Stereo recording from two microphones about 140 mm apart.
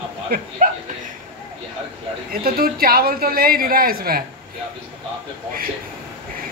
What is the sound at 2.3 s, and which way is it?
A woman's voice, 90° right.